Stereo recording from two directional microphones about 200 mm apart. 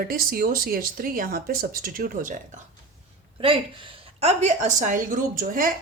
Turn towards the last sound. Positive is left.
turn(degrees=-45)  # may be behind; listen again after turning